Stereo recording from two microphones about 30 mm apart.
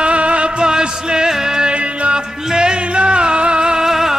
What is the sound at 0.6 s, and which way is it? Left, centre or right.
Music, right.